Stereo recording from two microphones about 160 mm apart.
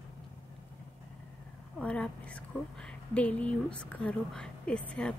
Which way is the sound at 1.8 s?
5° left (ahead or behind).